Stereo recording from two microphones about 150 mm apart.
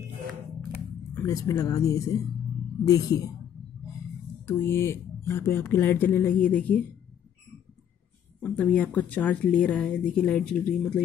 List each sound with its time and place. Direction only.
1.2 s speech: 20° left (ahead or behind)
4.5 s speech: 15° left (ahead or behind)
8.4 s speech: 10° left (ahead or behind)